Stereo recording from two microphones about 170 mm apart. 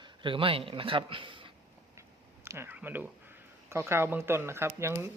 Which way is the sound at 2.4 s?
15° right (ahead or behind).